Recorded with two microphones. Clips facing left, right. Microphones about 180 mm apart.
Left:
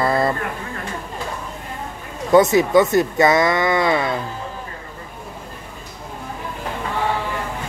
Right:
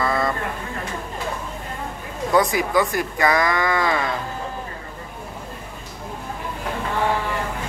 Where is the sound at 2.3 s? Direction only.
25° left (ahead or behind).